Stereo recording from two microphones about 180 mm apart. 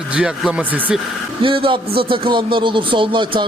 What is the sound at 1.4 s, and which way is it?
A man's voice, 30° right (ahead or behind).